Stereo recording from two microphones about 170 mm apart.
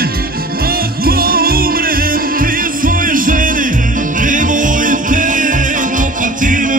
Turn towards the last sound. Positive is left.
turn(degrees=-50)  # may be behind; listen again after turning